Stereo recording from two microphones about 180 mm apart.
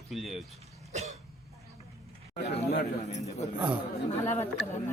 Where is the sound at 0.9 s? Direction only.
40° right (ahead or behind).